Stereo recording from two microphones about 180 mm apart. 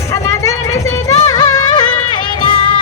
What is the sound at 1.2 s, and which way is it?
Music, 20° left (ahead or behind).